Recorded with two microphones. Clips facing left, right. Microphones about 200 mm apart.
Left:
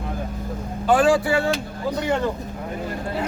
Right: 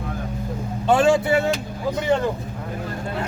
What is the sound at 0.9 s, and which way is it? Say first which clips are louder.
Speech: even; 25° right (ahead or behind).